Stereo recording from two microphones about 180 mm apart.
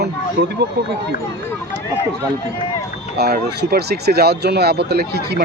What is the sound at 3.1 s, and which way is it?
Speech, 60° right (ahead or behind).